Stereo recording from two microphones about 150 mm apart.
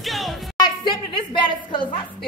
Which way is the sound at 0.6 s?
30° left (ahead or behind).